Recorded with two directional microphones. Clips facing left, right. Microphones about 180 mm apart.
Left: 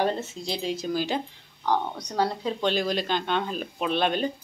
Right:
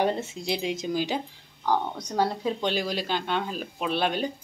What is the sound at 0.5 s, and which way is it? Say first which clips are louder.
Speech: right 1 dB; 10° right (ahead or behind).